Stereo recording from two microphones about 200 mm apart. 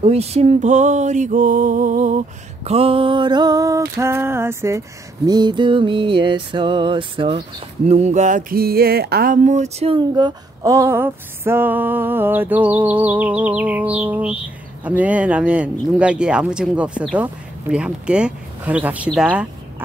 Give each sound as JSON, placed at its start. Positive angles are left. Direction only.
{"t": 0.0, "sound": "music", "side_deg": -30}
{"t": 7.9, "sound": "a sound", "side_deg": -35}
{"t": 19.1, "sound": "speech", "side_deg": -5}